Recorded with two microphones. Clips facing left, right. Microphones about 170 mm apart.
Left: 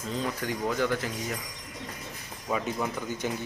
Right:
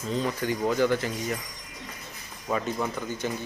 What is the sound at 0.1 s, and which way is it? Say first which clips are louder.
Speech: right 4 dB; centre (ahead or behind).